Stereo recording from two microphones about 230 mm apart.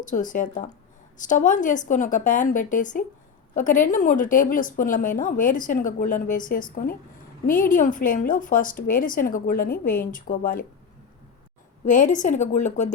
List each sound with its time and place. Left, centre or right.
0.0 s a woman's voice: left
11.9 s a woman's voice: left